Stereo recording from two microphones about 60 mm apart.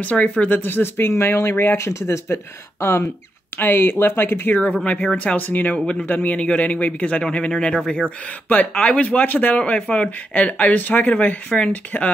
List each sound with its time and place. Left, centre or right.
0.0 s a man's voice: left